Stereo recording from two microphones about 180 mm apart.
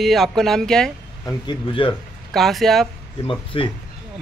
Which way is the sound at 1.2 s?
25° left (ahead or behind).